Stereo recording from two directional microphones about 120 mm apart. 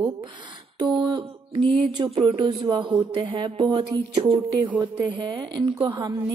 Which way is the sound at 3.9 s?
45° right (ahead or behind).